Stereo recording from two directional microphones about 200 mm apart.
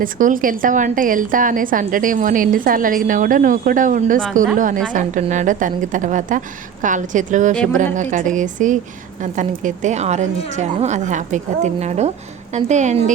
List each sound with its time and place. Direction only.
0.0 s a woman's voice: 40° right (ahead or behind)
7.5 s a woman's voice: 5° left (ahead or behind)
7.9 s a woman's voice: 40° right (ahead or behind)